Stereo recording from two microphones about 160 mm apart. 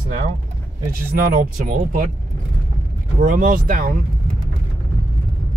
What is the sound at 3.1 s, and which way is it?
Speech, 60° right (ahead or behind).